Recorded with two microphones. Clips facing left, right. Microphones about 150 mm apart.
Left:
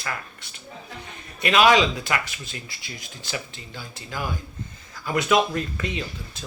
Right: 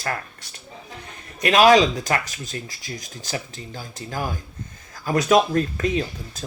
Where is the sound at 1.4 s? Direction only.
40° right (ahead or behind).